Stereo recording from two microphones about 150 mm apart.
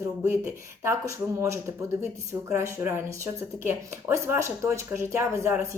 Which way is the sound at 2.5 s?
20° right (ahead or behind).